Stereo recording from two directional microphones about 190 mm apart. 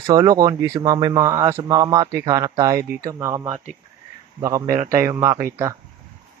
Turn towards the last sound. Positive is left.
turn(degrees=-15)  # may be behind; listen again after turning